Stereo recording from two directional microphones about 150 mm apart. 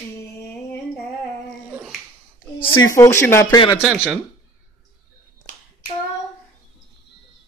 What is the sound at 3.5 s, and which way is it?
Speech, 30° left (ahead or behind).